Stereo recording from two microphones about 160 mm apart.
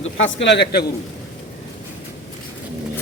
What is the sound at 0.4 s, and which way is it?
Speech, 90° left.